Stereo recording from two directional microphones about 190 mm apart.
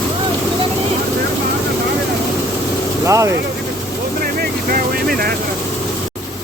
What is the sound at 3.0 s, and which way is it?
Vehicle, 15° right (ahead or behind).